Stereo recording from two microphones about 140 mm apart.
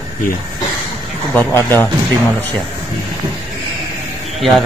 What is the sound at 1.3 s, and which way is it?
Speech, 15° left (ahead or behind).